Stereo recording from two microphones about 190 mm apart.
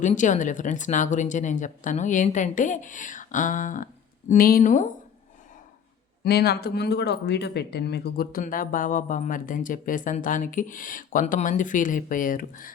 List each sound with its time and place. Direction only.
0.0 s speech: 40° left (ahead or behind)
6.2 s speech: 60° left (ahead or behind)